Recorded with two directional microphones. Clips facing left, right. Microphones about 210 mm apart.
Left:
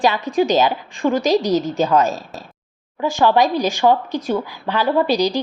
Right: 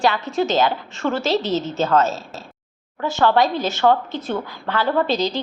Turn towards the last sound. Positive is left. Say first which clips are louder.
# left 3 dB
turn(degrees=15)  # may be behind; listen again after turning